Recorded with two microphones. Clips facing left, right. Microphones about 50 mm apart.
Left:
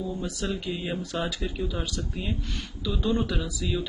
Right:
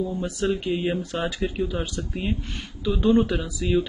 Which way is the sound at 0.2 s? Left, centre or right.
Right.